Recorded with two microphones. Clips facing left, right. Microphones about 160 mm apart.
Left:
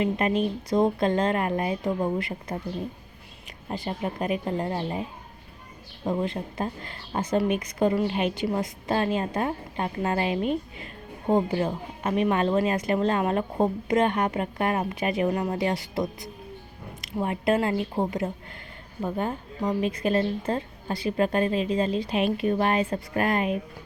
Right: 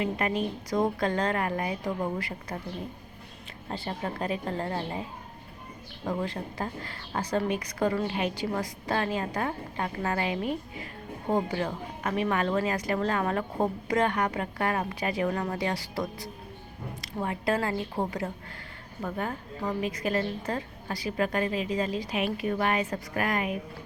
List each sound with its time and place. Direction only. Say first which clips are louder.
0.0 s speech: left 4 dB; 25° left (ahead or behind)
3.7 s speech: left 3 dB; 15° left (ahead or behind)
6.1 s speech: left 4 dB; 20° left (ahead or behind)